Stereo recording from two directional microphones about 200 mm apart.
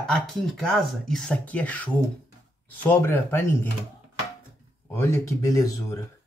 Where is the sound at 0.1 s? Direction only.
Centre (ahead or behind).